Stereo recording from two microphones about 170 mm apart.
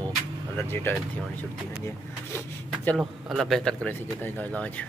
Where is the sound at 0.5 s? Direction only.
15° left (ahead or behind).